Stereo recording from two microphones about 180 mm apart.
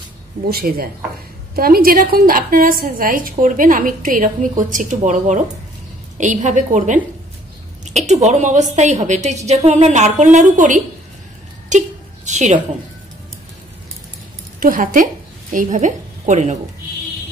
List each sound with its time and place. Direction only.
0.5 s a woman's voice: 55° right (ahead or behind)
14.6 s a woman's voice: 50° right (ahead or behind)